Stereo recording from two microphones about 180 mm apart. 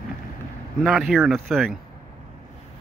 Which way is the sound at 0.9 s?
Centre (ahead or behind).